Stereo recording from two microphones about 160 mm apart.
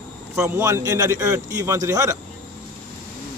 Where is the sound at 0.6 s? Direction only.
20° right (ahead or behind).